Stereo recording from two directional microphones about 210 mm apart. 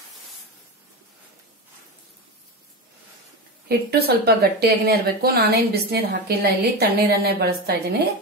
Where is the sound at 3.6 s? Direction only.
50° right (ahead or behind).